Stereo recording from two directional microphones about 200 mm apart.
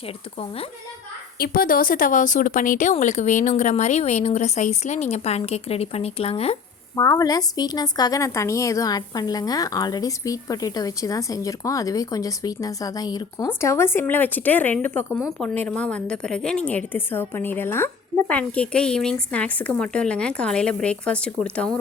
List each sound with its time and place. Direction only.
1.4 s speech: 45° left (ahead or behind); by 6.6 s 30° left (ahead or behind)
6.9 s a woman's voice: 15° left (ahead or behind)